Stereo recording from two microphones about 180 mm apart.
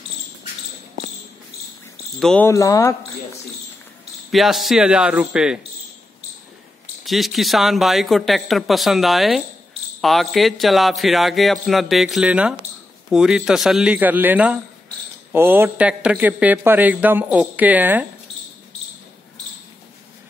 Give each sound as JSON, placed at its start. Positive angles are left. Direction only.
{"t": 2.1, "sound": "a man's voice", "side_deg": 0}
{"t": 2.4, "sound": "speech", "side_deg": 15}
{"t": 4.3, "sound": "a man's voice", "side_deg": 0}
{"t": 7.1, "sound": "a man's voice", "side_deg": 0}